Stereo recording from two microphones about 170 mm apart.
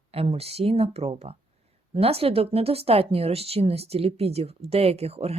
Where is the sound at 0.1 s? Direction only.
35° right (ahead or behind).